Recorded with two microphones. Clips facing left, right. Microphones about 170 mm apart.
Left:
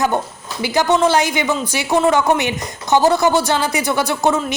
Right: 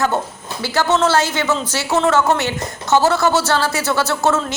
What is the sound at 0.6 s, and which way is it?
Speech, 15° left (ahead or behind).